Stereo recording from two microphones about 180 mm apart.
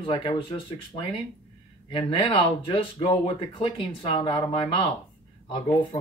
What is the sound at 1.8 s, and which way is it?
Speech, 25° left (ahead or behind).